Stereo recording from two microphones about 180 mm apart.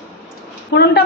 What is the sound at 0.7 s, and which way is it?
Speech, 65° left (ahead or behind).